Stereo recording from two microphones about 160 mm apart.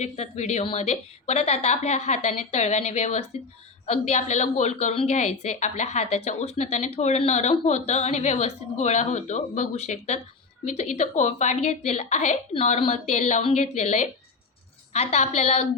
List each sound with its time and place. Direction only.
0.0 s a woman's voice: 45° left (ahead or behind)